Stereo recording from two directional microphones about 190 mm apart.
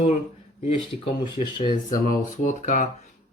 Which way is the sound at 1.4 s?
35° left (ahead or behind).